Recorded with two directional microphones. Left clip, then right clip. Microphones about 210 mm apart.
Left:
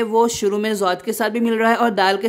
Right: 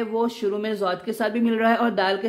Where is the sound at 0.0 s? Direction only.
40° left (ahead or behind).